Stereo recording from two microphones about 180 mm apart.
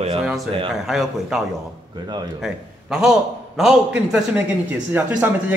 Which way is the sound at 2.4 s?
5° right (ahead or behind).